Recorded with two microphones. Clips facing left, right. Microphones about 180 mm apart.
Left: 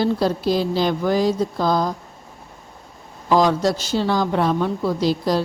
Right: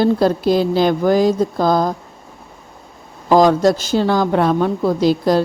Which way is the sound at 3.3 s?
50° right (ahead or behind).